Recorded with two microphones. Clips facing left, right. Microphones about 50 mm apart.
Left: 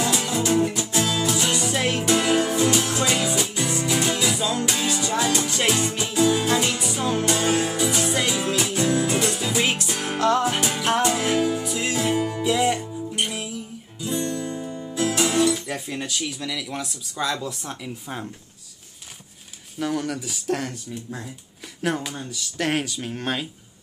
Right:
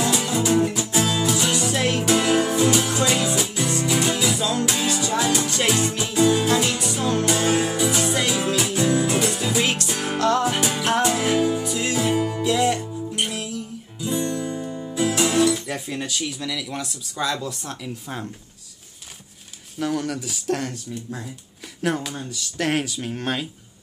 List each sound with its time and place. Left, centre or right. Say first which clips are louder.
0.0 s music: right 1 dB; centre
7.2 s music: right 1 dB; centre
13.3 s music: right 2 dB; centre
14.0 s guitar: right 2 dB; centre
14.7 s music: right 2 dB; centre
15.0 s speech: right 1 dB; centre
19.8 s speech: right 1 dB; centre